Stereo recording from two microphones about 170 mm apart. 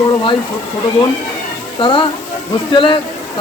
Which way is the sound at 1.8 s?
30° left (ahead or behind).